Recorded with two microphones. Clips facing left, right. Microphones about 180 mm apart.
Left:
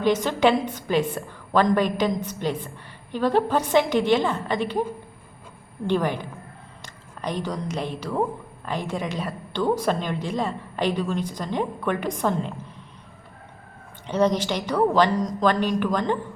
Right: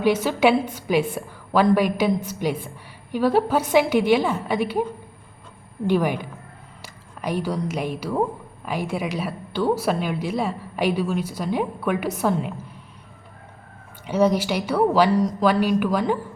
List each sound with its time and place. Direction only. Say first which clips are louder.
0.0 s a woman's voice: right 1 dB; 10° right (ahead or behind)
5.9 s a woman's voice: right 2 dB; 10° right (ahead or behind)
14.1 s a woman's voice: right 2 dB; 10° right (ahead or behind)